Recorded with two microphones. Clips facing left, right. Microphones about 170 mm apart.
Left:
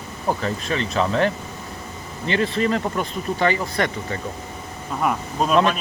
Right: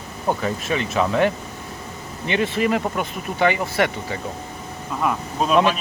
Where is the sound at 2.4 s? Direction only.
5° right (ahead or behind).